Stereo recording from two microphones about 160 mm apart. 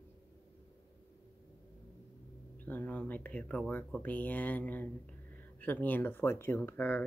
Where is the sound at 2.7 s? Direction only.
10° left (ahead or behind).